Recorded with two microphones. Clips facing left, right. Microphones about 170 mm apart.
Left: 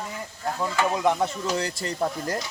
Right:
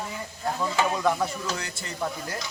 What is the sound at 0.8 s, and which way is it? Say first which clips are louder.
Speech: left 2 dB; 20° left (ahead or behind).